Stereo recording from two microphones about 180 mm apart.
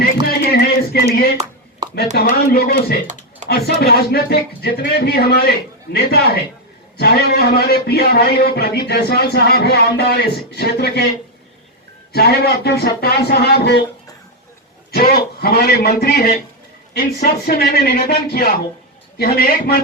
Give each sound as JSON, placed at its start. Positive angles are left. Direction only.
{"t": 0.0, "sound": "a sound", "side_deg": 60}
{"t": 1.0, "sound": "a man's voice", "side_deg": 60}
{"t": 1.8, "sound": "chopping", "side_deg": -20}
{"t": 2.1, "sound": "a man's voice", "side_deg": 55}
{"t": 12.1, "sound": "a man's voice", "side_deg": 60}
{"t": 14.9, "sound": "a man's voice", "side_deg": 60}